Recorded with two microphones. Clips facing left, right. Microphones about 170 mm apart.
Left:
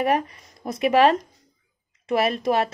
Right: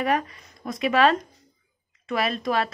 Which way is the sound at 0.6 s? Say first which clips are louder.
Left 2 dB; 40° left (ahead or behind).